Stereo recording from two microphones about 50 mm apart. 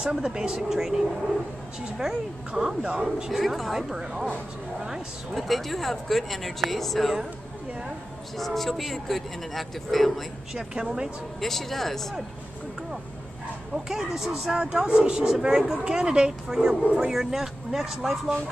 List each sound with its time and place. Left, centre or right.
0.0 s speech: centre
2.8 s speech: right
3.3 s speech: centre
3.9 s speech: centre
8.4 s speech: centre
10.5 s speech: centre
11.4 s speech: centre
13.8 s speech: centre
14.6 s speech: right
17.1 s speech: centre